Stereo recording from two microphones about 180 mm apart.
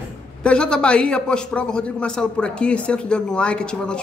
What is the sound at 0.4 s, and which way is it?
Speech, 5° left (ahead or behind).